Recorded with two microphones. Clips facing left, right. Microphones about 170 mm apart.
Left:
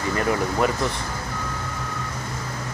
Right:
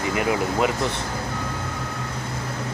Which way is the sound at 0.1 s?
10° right (ahead or behind).